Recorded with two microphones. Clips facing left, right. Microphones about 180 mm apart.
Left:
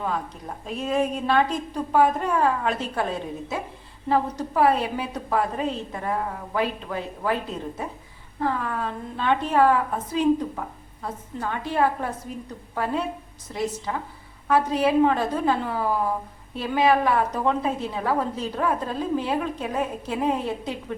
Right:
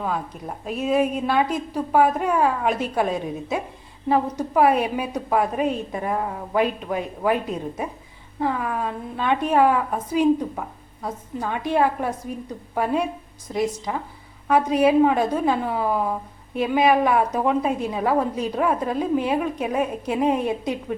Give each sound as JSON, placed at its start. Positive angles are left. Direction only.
{"t": 0.0, "sound": "a woman's voice", "side_deg": -10}